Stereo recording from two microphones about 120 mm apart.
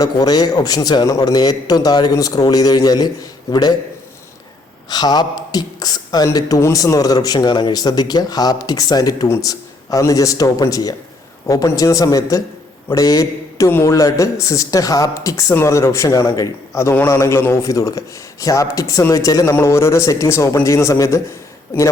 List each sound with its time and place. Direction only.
0.0 s speech: 35° left (ahead or behind)
4.9 s a man's voice: 35° left (ahead or behind)